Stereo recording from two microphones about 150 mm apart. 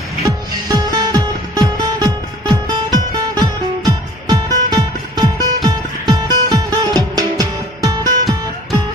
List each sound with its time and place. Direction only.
0.2 s music: 25° right (ahead or behind)